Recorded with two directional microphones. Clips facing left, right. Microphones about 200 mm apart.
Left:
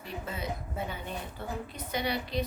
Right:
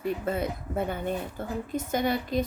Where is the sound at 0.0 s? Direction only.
55° right (ahead or behind).